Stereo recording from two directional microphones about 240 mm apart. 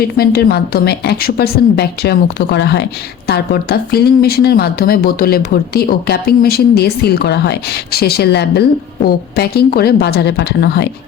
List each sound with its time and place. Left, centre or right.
0.0 s a woman's voice: left